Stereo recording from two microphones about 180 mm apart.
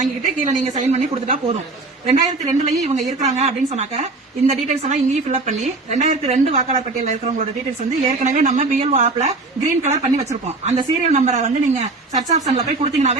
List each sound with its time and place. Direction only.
0.0 s a woman's voice: 40° right (ahead or behind)